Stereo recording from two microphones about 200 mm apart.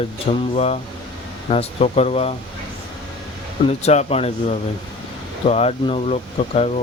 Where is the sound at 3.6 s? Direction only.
35° left (ahead or behind).